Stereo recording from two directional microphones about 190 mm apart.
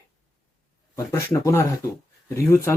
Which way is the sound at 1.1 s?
15° left (ahead or behind).